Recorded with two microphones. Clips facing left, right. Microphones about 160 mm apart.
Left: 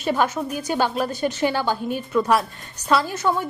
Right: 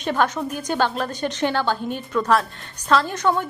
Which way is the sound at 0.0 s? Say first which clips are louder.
Even; 5° left (ahead or behind).